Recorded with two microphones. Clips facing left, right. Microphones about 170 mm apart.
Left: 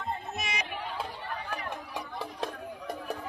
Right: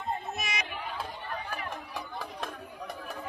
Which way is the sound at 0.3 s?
30° left (ahead or behind).